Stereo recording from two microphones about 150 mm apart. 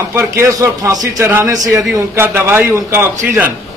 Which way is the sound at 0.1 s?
15° right (ahead or behind).